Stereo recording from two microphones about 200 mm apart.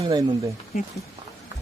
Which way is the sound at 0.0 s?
20° right (ahead or behind).